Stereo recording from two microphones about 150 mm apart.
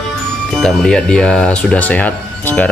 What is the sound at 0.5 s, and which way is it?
Speech, centre (ahead or behind).